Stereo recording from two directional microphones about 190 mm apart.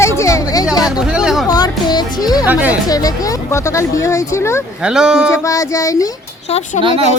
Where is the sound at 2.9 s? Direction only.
20° left (ahead or behind).